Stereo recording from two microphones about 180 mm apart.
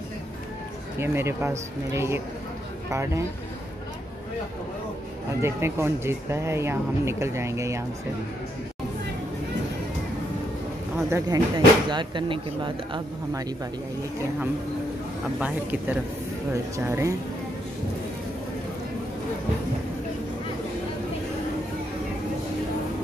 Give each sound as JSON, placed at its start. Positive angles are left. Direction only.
{"t": 0.9, "sound": "speech", "side_deg": -15}
{"t": 5.4, "sound": "speech", "side_deg": -15}
{"t": 11.1, "sound": "speech", "side_deg": -15}
{"t": 15.3, "sound": "speech", "side_deg": -10}